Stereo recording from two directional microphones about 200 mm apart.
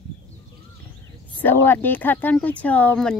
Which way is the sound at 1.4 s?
10° left (ahead or behind).